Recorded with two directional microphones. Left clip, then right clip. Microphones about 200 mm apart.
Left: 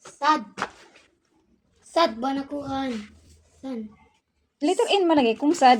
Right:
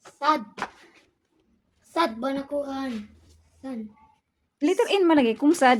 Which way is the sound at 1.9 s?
35° right (ahead or behind).